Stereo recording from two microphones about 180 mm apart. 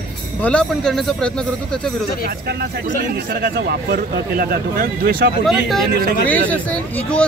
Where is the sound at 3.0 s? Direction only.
60° right (ahead or behind).